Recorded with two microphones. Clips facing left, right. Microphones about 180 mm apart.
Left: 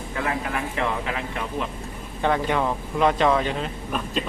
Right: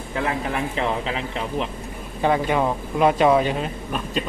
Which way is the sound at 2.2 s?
10° right (ahead or behind).